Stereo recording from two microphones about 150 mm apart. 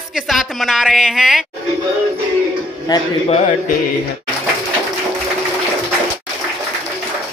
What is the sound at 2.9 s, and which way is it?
Speech, 25° left (ahead or behind).